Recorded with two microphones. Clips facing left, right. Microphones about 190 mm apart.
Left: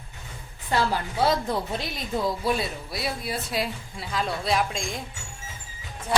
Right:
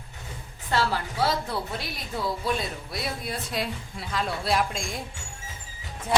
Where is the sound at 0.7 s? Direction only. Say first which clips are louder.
Left 1 dB; 15° left (ahead or behind).